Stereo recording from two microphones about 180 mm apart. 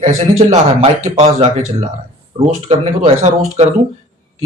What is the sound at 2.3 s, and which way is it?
Speech, 30° right (ahead or behind).